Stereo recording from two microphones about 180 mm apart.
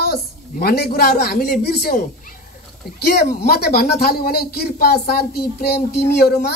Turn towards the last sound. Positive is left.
turn(degrees=60)  # may be behind; listen again after turning